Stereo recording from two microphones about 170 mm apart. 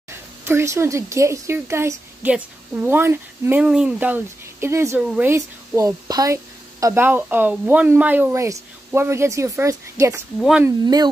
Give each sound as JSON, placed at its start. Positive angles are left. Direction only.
{"t": 0.5, "sound": "a woman's voice", "side_deg": -15}